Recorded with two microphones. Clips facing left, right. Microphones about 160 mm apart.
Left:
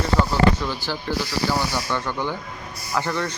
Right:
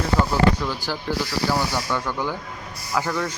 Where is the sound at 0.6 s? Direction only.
10° right (ahead or behind).